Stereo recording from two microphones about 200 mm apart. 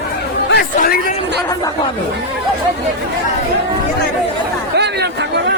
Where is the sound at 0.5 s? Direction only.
50° left (ahead or behind).